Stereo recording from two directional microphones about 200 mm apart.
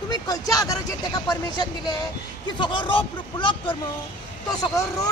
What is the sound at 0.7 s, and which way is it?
A woman's voice, 20° left (ahead or behind).